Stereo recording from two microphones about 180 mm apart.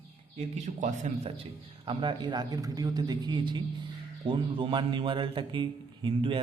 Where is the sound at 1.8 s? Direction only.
25° right (ahead or behind).